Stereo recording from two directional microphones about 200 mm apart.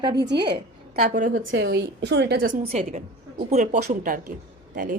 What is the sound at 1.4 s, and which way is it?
A woman's voice, 70° right (ahead or behind).